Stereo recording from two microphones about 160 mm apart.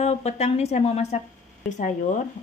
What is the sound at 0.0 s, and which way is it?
Speech, 45° left (ahead or behind).